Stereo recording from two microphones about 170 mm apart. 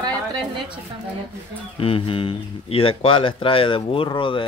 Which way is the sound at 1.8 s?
35° left (ahead or behind).